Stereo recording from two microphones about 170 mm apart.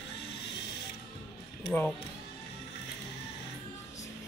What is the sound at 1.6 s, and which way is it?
Speech, 5° left (ahead or behind).